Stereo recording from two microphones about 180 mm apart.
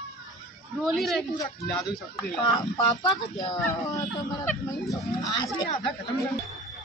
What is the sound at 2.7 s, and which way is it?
Speech, 20° left (ahead or behind).